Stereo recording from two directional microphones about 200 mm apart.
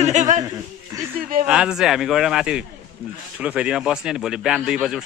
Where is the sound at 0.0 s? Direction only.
35° right (ahead or behind).